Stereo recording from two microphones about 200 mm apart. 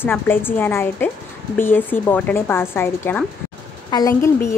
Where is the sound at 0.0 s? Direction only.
10° left (ahead or behind).